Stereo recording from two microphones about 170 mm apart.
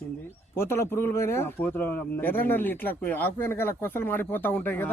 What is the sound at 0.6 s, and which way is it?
Speech, 15° left (ahead or behind).